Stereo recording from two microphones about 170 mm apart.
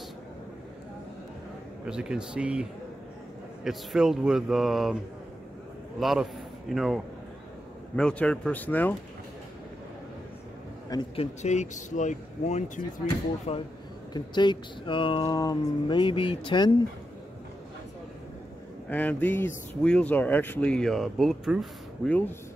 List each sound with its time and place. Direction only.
1.9 s speech: 5° right (ahead or behind)
5.9 s speech: centre (ahead or behind)
11.1 s speech: 40° left (ahead or behind)
18.9 s speech: 10° left (ahead or behind)